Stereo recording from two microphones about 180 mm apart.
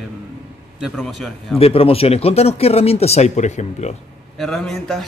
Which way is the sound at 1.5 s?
30° left (ahead or behind).